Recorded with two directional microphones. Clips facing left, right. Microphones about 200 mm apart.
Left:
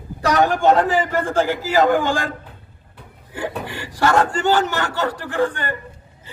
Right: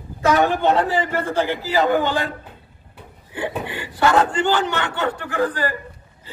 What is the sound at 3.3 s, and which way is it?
A man's voice, 45° left (ahead or behind).